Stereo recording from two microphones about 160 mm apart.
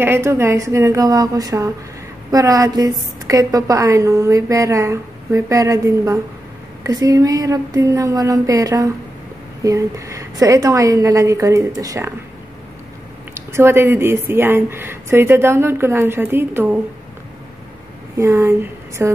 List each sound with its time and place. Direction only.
0.0 s a woman's voice: 15° right (ahead or behind)
13.3 s speech: 15° right (ahead or behind)
18.1 s speech: 20° right (ahead or behind)